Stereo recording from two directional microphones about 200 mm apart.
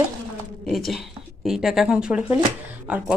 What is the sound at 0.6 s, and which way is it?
Speech, centre (ahead or behind).